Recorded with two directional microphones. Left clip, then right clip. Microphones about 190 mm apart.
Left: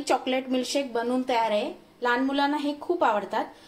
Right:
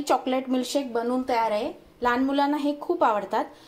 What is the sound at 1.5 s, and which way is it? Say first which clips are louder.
A woman's voice: even; 25° right (ahead or behind).